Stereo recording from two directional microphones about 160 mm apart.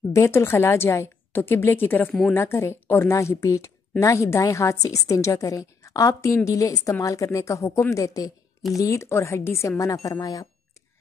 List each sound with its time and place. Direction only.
0.1 s a woman's voice: 15° left (ahead or behind)